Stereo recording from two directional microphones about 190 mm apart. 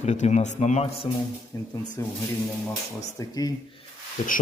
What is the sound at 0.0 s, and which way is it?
Speech, 40° left (ahead or behind).